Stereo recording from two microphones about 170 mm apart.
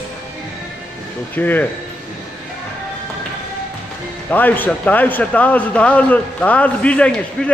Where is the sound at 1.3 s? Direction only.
10° left (ahead or behind).